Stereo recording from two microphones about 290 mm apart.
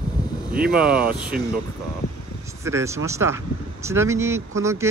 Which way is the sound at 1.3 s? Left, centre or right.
Right.